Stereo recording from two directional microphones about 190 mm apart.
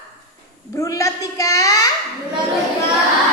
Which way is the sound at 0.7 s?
15° left (ahead or behind).